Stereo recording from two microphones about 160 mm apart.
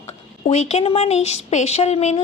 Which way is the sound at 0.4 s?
45° left (ahead or behind).